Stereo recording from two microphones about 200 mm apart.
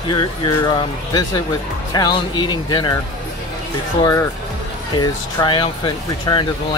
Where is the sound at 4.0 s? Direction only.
15° left (ahead or behind).